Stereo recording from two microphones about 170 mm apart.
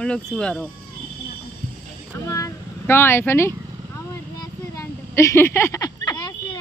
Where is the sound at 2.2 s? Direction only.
20° left (ahead or behind).